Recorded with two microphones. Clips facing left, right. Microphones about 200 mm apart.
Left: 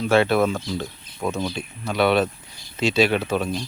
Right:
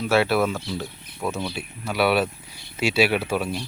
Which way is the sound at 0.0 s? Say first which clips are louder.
Left 2 dB; 5° right (ahead or behind).